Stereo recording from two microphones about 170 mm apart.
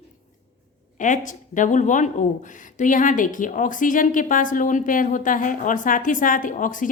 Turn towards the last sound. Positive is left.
turn(degrees=50)  # may be behind; listen again after turning